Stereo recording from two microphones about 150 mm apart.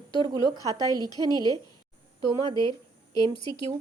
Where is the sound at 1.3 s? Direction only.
30° right (ahead or behind).